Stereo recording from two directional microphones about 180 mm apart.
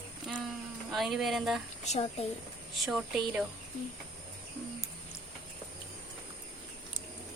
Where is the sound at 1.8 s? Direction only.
35° left (ahead or behind).